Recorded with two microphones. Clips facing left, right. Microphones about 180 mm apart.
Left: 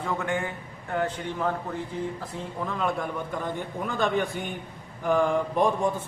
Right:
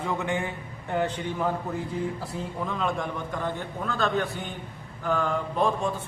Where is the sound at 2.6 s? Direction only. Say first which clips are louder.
Left 1 dB; 5° left (ahead or behind).